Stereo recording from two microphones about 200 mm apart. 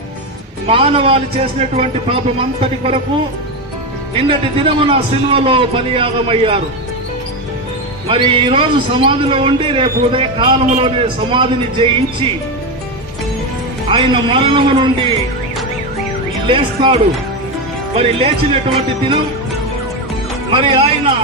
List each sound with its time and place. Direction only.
0.7 s a man's voice: 25° right (ahead or behind)
4.3 s a man's voice: 30° right (ahead or behind)
8.1 s a man's voice: 25° right (ahead or behind)
13.8 s a man's voice: 25° right (ahead or behind)
16.4 s a man's voice: 25° right (ahead or behind)
20.5 s a man's voice: 25° right (ahead or behind)